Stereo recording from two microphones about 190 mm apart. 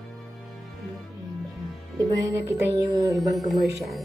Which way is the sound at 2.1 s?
15° right (ahead or behind).